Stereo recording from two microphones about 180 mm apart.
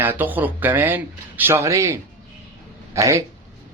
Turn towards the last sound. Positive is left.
turn(degrees=-15)  # may be behind; listen again after turning